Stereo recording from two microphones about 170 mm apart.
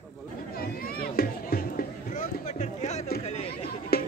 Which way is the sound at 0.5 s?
60° left (ahead or behind).